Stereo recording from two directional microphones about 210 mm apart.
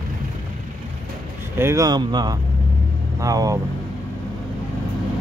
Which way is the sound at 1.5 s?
15° right (ahead or behind).